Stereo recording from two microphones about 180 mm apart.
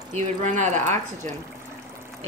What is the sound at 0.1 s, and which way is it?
Speech, 45° right (ahead or behind).